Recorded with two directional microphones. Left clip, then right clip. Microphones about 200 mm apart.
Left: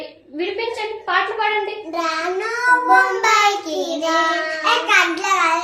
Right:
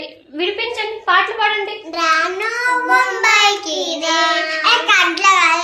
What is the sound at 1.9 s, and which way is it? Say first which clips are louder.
Child singing: right 8 dB; 10° left (ahead or behind).